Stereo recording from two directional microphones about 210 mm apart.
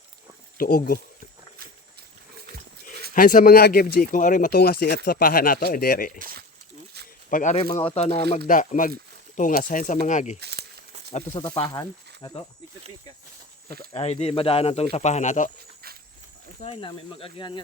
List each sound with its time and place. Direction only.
0.6 s speech: 45° left (ahead or behind)
3.2 s speech: 40° left (ahead or behind)
7.3 s speech: 35° left (ahead or behind)
10.4 s crumpling: 50° right (ahead or behind)
11.1 s speech: 25° left (ahead or behind)
13.9 s speech: 30° left (ahead or behind)
16.6 s speech: 25° left (ahead or behind)